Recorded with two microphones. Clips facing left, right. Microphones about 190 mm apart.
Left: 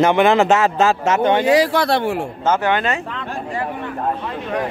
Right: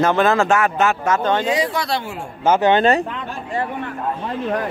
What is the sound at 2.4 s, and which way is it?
Speech, 15° right (ahead or behind).